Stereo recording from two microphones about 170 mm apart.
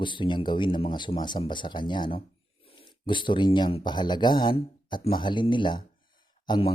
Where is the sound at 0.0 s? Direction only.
30° left (ahead or behind).